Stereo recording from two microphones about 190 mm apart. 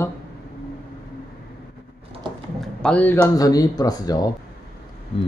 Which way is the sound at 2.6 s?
5° left (ahead or behind).